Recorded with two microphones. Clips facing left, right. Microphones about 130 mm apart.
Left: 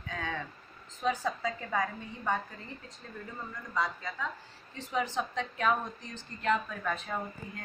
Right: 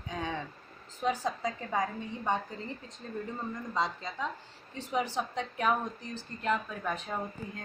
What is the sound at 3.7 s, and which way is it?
Speech, 25° right (ahead or behind).